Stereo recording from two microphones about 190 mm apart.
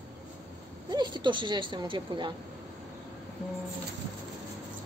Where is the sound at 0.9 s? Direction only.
25° right (ahead or behind).